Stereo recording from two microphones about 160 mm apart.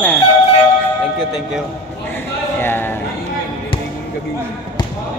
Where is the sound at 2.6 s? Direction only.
15° left (ahead or behind).